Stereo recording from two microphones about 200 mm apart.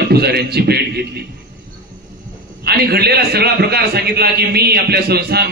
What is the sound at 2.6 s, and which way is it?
A man's voice, 50° right (ahead or behind).